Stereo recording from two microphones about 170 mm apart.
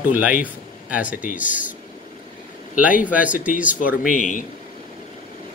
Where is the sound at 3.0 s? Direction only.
10° right (ahead or behind).